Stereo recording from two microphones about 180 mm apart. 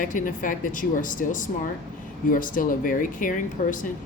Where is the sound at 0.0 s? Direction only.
45° left (ahead or behind).